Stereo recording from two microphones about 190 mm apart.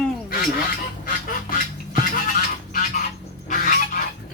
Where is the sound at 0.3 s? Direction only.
50° left (ahead or behind).